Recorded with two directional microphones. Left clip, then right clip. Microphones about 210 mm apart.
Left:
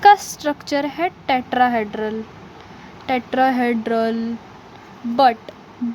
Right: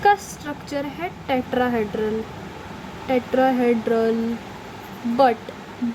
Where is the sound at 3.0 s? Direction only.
55° left (ahead or behind).